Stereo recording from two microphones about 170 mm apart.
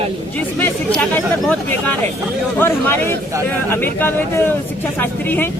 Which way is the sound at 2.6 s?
10° left (ahead or behind).